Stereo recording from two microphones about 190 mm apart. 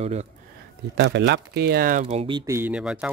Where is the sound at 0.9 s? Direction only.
65° right (ahead or behind); by 2.1 s 45° right (ahead or behind).